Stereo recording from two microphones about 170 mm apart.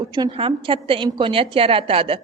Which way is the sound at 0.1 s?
30° right (ahead or behind).